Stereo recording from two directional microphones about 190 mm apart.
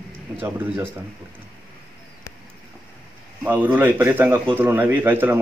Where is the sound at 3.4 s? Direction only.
10° right (ahead or behind).